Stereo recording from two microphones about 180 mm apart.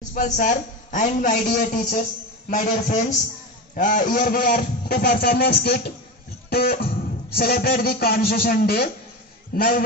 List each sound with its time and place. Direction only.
0.1 s a man's voice: 45° left (ahead or behind)
2.5 s a man's voice: 40° left (ahead or behind)